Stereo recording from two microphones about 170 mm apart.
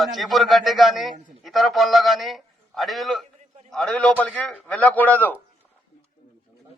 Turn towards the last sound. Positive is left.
turn(degrees=10)  # may be behind; listen again after turning